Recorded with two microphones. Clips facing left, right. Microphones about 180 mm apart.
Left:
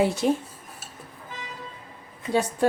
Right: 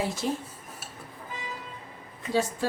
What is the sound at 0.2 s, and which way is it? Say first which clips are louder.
Speech: left 5 dB; 70° left (ahead or behind).